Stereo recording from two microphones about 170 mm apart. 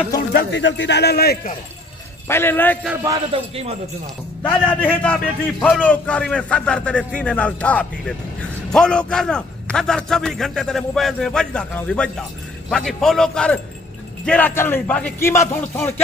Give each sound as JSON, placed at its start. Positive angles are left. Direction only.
{"t": 0.3, "sound": "a man's voice", "side_deg": 90}
{"t": 2.2, "sound": "a man's voice", "side_deg": 15}
{"t": 3.3, "sound": "a man's voice", "side_deg": -35}
{"t": 4.4, "sound": "a man's voice", "side_deg": 10}